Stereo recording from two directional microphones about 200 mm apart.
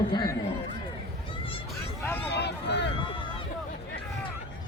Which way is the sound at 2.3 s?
60° left (ahead or behind).